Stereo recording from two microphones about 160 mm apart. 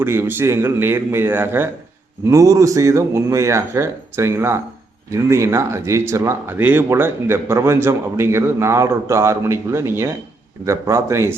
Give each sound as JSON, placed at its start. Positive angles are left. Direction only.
{"t": 0.0, "sound": "speech", "side_deg": -15}